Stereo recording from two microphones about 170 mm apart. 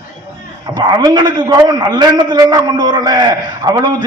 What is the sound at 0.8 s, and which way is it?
A man's voice, 25° right (ahead or behind).